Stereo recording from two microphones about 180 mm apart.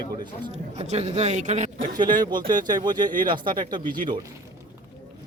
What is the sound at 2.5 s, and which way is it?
Speech, 25° right (ahead or behind).